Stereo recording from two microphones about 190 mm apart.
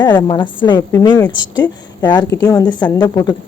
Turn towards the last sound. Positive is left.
turn(degrees=20)  # may be behind; listen again after turning